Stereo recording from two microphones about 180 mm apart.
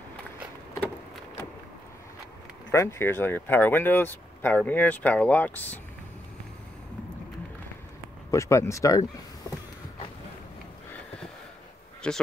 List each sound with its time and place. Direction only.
2.7 s speech: 15° left (ahead or behind)
8.3 s speech: 15° left (ahead or behind)
12.0 s speech: 5° left (ahead or behind)